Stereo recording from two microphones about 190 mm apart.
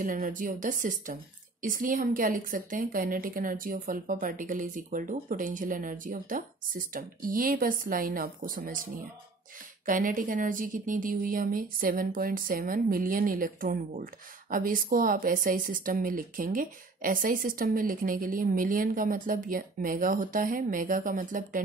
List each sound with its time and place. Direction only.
0.0 s speech: 45° right (ahead or behind)